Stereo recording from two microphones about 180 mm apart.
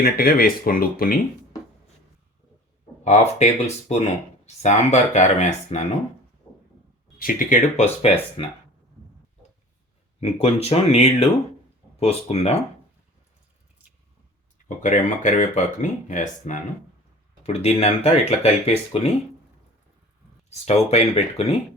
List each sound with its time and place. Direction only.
0.0 s speech: 55° left (ahead or behind)
3.0 s speech: 40° left (ahead or behind)
7.2 s speech: 50° left (ahead or behind)
10.2 s speech: 35° left (ahead or behind)
14.8 s speech: 45° left (ahead or behind)
20.5 s speech: 35° left (ahead or behind)